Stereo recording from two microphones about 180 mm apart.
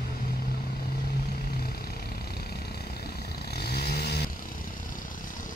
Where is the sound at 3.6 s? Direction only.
60° left (ahead or behind).